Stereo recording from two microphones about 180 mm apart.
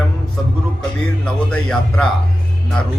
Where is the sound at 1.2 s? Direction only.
5° left (ahead or behind).